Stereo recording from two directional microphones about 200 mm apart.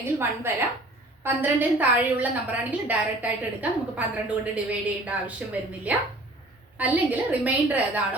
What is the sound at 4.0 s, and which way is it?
A woman's voice, 5° right (ahead or behind).